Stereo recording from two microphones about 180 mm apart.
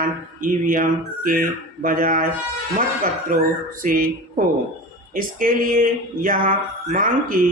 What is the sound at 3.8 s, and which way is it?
A man's voice, 50° right (ahead or behind).